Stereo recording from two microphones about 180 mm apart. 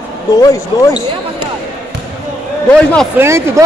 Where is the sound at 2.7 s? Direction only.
5° left (ahead or behind).